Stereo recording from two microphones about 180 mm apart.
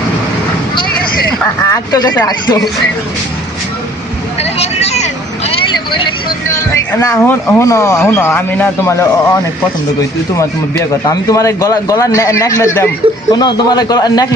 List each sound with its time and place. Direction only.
1.6 s a man's voice: 20° left (ahead or behind)
4.5 s vehicle: 35° left (ahead or behind)
5.6 s speech: 25° left (ahead or behind)
11.0 s a man's voice: 20° left (ahead or behind)